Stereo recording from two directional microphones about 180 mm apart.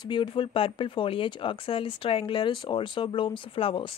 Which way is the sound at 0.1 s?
30° left (ahead or behind).